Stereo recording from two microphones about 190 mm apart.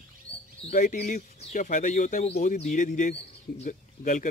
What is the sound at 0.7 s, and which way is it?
Speech, 40° left (ahead or behind).